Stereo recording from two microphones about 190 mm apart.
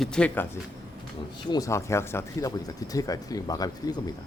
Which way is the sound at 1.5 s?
15° left (ahead or behind).